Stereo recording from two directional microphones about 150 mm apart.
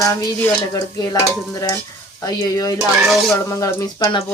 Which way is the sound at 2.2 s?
25° left (ahead or behind).